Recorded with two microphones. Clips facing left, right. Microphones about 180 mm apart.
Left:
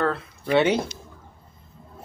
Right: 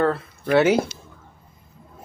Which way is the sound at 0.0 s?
5° right (ahead or behind).